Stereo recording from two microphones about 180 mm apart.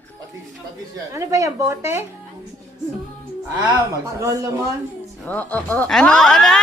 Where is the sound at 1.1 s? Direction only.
15° right (ahead or behind).